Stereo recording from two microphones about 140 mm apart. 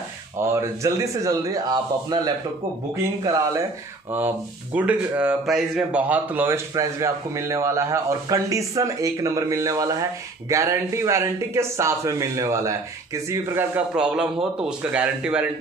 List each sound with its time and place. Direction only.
0.4 s speech: 20° right (ahead or behind)
4.7 s speech: 10° right (ahead or behind)
13.9 s speech: 5° right (ahead or behind)